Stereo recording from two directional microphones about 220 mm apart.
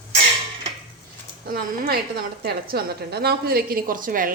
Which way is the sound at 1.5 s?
40° right (ahead or behind).